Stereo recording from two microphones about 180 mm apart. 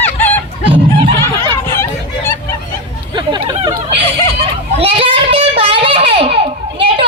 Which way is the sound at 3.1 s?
25° right (ahead or behind).